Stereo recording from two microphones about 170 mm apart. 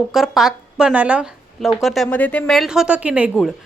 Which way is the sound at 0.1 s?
Centre (ahead or behind).